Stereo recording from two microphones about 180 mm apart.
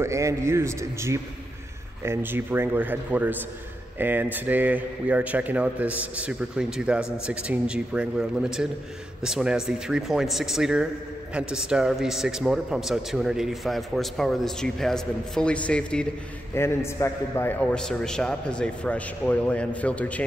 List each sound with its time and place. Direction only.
0.0 s a man's voice: 15° right (ahead or behind); by 20.2 s 5° left (ahead or behind)